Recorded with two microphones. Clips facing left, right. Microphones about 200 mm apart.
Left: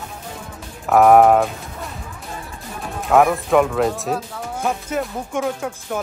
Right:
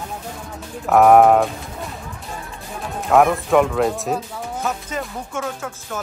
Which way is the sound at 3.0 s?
Centre (ahead or behind).